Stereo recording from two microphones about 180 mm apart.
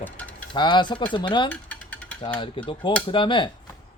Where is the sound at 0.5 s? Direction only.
25° left (ahead or behind).